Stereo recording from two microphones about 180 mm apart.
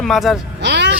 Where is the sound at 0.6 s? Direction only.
70° right (ahead or behind).